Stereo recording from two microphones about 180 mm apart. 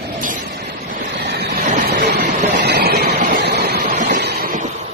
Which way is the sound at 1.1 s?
65° right (ahead or behind).